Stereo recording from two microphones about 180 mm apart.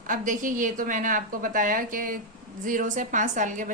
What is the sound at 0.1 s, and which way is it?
A woman's voice, 45° right (ahead or behind).